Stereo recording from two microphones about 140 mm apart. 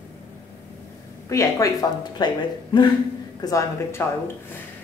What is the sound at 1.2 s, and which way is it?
Speech, 20° left (ahead or behind).